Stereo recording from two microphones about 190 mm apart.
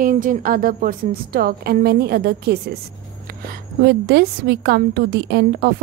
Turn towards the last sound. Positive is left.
turn(degrees=-60)  # may be behind; listen again after turning